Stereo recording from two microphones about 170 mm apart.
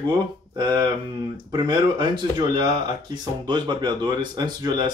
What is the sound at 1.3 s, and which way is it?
Speech, 25° right (ahead or behind).